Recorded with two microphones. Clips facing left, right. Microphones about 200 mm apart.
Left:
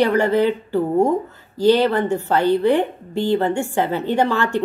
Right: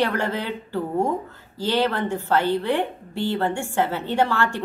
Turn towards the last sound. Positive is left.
turn(degrees=15)  # may be behind; listen again after turning